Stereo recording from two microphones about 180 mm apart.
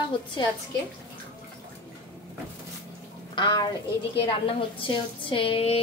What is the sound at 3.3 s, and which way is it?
A child's voice, 25° left (ahead or behind).